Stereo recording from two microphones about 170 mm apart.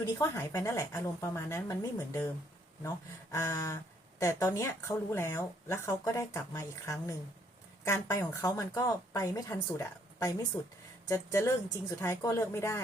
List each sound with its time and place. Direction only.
0.1 s speech: 20° left (ahead or behind)
3.3 s speech: 20° left (ahead or behind)